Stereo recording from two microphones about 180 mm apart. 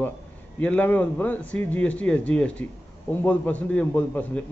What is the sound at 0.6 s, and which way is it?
Speech, 10° left (ahead or behind).